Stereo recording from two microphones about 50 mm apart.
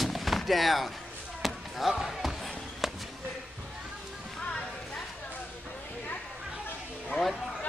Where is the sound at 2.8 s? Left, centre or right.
Centre.